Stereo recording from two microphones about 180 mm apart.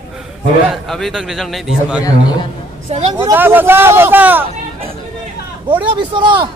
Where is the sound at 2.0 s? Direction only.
25° left (ahead or behind).